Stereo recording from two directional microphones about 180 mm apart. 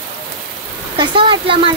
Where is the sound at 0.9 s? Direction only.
25° right (ahead or behind).